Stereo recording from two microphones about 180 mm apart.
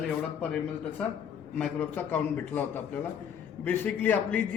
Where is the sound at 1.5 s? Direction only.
10° left (ahead or behind).